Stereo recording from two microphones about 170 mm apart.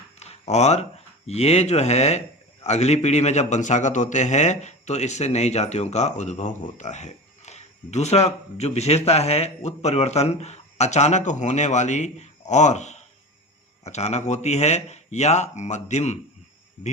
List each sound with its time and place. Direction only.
0.2 s a man's voice: 40° left (ahead or behind)